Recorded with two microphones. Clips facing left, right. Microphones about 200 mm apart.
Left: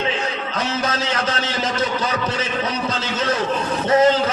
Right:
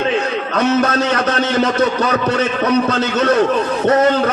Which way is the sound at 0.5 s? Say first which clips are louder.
Right 10 dB; 65° right (ahead or behind).